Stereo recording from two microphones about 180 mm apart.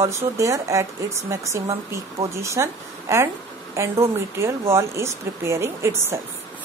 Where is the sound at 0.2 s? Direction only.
15° right (ahead or behind).